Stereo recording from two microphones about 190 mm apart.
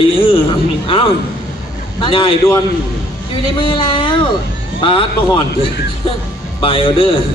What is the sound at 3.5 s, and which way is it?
A man's voice, 25° left (ahead or behind).